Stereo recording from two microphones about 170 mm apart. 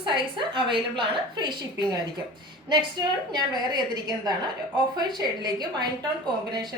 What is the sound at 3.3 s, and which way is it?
A woman's voice, 25° right (ahead or behind).